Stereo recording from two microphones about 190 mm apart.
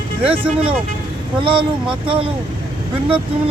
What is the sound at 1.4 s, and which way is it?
Speech, 25° right (ahead or behind).